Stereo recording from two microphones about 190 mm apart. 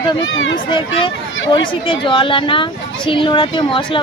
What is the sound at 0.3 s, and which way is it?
Speech, 85° left.